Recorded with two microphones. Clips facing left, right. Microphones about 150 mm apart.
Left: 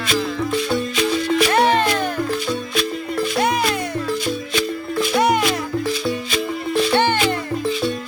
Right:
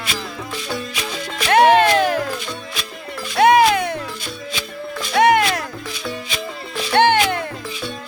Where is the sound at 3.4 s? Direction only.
90° right.